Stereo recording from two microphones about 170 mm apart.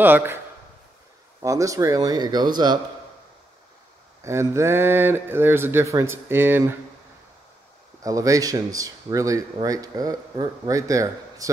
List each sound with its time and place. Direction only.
0.0 s speech: 10° right (ahead or behind)
1.4 s speech: 20° right (ahead or behind)
4.2 s speech: 15° right (ahead or behind)
8.0 s speech: 20° right (ahead or behind)